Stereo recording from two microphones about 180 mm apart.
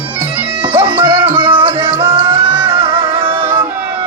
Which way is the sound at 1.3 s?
25° right (ahead or behind).